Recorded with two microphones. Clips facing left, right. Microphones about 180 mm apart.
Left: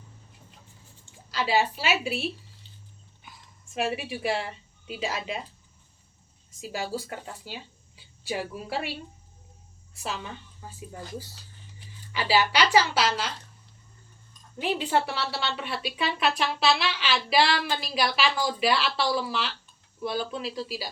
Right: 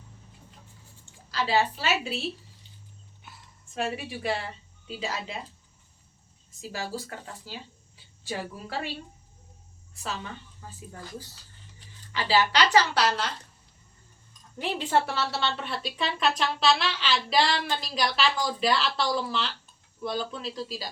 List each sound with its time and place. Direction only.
1.3 s a woman's voice: 15° left (ahead or behind)
3.8 s a woman's voice: 15° left (ahead or behind)
6.6 s a woman's voice: 15° left (ahead or behind)
12.1 s a woman's voice: 15° left (ahead or behind)
14.6 s a woman's voice: centre (ahead or behind)